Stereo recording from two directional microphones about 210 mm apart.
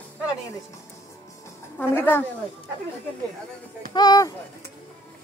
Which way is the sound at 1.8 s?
10° left (ahead or behind).